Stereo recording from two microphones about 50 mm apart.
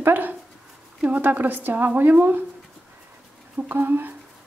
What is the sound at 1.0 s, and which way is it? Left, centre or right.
A woman's voice, right.